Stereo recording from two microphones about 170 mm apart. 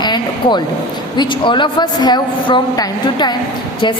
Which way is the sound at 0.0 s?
25° left (ahead or behind).